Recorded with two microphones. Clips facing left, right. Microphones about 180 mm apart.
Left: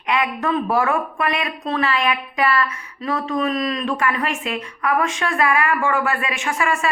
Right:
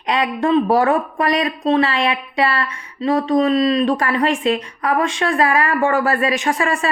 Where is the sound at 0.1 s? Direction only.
30° right (ahead or behind).